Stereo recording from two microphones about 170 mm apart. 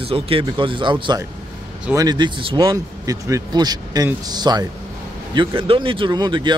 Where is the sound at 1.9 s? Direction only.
25° right (ahead or behind).